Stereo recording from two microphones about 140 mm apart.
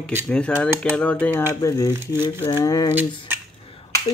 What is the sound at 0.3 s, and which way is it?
Speech, 10° left (ahead or behind).